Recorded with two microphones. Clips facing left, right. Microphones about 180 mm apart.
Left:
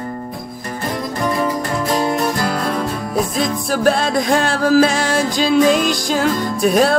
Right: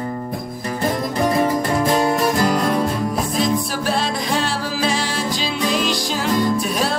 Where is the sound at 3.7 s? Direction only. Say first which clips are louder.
Left 6 dB; 50° left (ahead or behind).